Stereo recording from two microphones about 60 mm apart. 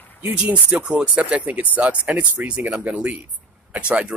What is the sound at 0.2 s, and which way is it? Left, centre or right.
Speech, right.